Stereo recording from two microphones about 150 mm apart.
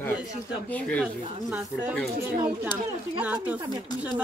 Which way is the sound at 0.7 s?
10° left (ahead or behind).